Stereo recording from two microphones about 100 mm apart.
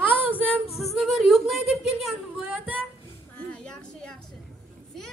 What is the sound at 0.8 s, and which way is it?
A woman's voice, centre (ahead or behind).